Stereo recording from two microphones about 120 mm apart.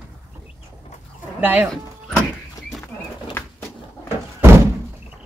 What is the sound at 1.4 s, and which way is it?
Speech, 15° right (ahead or behind).